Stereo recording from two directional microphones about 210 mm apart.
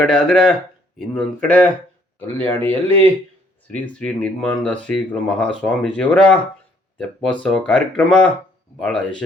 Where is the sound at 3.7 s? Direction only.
5° left (ahead or behind).